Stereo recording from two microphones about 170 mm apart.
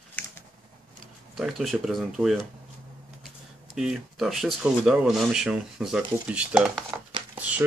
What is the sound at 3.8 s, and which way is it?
Speech, centre (ahead or behind).